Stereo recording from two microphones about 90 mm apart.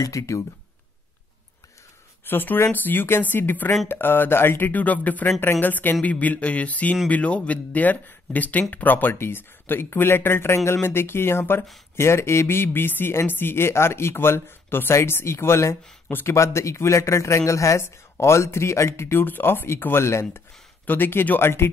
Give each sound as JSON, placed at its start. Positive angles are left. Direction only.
{"t": 0.0, "sound": "a man's voice", "side_deg": 35}
{"t": 2.2, "sound": "speech", "side_deg": 20}
{"t": 16.3, "sound": "a man's voice", "side_deg": 35}